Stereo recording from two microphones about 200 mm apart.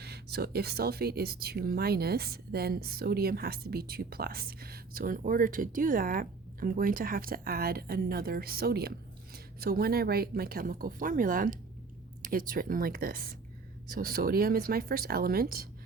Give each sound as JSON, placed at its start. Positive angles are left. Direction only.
{"t": 0.0, "sound": "speech", "side_deg": -55}